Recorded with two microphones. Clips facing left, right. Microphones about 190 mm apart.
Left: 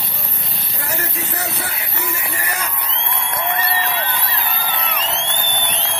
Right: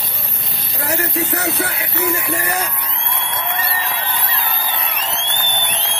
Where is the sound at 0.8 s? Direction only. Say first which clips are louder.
Right 7 dB; 65° right (ahead or behind).